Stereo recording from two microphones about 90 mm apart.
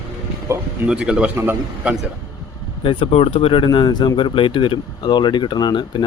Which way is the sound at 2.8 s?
80° left.